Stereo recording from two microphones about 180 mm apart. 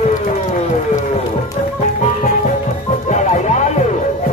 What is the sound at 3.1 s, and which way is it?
Music, 40° left (ahead or behind).